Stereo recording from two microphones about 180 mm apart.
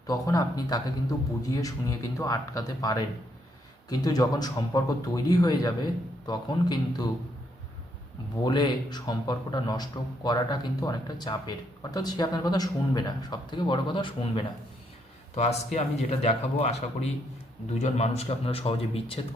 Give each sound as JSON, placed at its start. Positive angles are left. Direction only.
{"t": 0.1, "sound": "a man's voice", "side_deg": 20}
{"t": 8.4, "sound": "a man's voice", "side_deg": 25}
{"t": 15.4, "sound": "a man's voice", "side_deg": 40}